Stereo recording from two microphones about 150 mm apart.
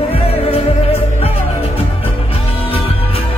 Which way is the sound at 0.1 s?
40° left (ahead or behind).